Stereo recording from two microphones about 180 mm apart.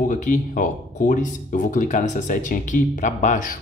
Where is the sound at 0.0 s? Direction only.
45° left (ahead or behind).